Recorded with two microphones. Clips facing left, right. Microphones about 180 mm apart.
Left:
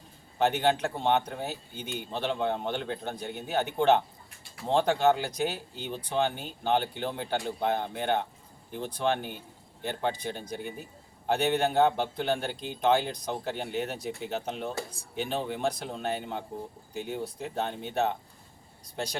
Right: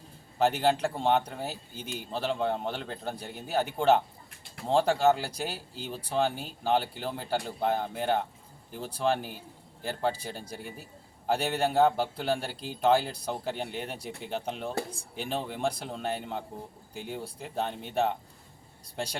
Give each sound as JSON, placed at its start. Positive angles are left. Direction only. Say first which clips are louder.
{"t": 0.3, "sound": "speech", "louder": "even", "side_deg": -5}